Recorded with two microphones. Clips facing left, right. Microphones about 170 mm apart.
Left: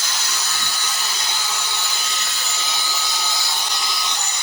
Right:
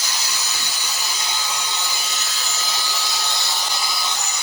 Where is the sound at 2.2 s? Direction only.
Centre (ahead or behind).